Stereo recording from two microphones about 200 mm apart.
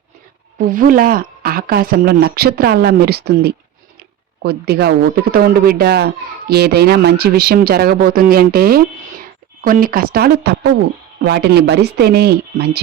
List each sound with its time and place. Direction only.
0.6 s speech: 45° right (ahead or behind)